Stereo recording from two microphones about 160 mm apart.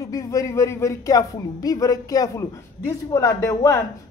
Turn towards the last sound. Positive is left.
turn(degrees=20)  # may be behind; listen again after turning